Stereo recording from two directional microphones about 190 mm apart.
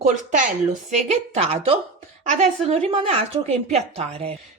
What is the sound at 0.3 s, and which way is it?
A woman's voice, 40° right (ahead or behind).